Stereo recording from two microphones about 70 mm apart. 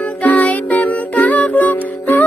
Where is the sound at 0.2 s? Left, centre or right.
Left.